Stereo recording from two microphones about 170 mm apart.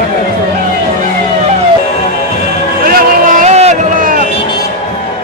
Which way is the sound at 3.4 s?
40° right (ahead or behind).